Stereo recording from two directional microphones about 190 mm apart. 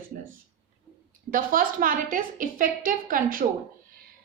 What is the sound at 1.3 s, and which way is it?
A woman's voice, 45° right (ahead or behind).